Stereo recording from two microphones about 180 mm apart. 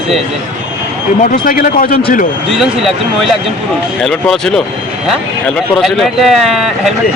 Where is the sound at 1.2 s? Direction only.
50° left (ahead or behind).